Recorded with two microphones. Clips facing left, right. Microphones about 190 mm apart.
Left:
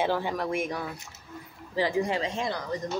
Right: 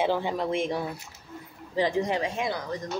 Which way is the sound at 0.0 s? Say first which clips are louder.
Right 1 dB; 15° right (ahead or behind).